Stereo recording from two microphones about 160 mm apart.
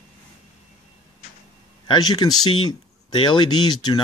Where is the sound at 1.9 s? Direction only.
25° left (ahead or behind).